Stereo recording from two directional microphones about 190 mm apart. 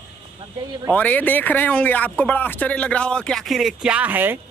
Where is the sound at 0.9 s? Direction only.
10° left (ahead or behind); by 4.4 s 10° right (ahead or behind).